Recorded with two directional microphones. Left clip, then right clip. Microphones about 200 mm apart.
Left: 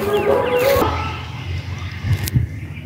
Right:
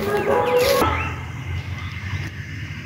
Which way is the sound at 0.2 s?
45° left (ahead or behind).